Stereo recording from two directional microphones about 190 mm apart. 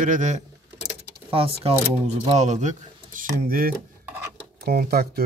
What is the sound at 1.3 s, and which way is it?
Speech, 30° right (ahead or behind).